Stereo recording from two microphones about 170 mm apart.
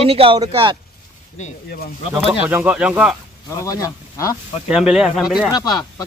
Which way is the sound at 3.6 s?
20° left (ahead or behind).